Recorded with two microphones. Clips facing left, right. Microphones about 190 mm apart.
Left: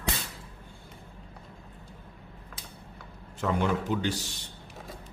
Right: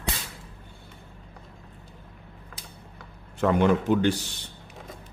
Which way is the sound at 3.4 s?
60° right (ahead or behind).